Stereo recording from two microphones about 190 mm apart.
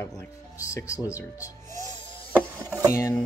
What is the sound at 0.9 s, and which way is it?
Speech, 10° right (ahead or behind).